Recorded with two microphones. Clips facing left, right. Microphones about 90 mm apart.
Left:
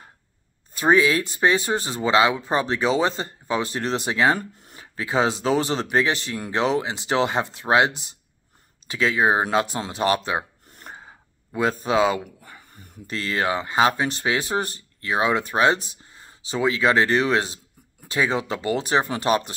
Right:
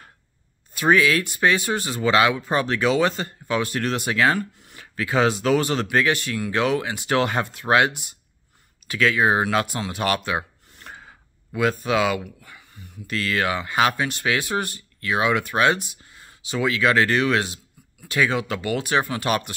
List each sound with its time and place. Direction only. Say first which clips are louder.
0.7 s speech: even; 25° left (ahead or behind)
4.4 s speech: right 4 dB; 35° left (ahead or behind)
13.1 s speech: even; 30° left (ahead or behind)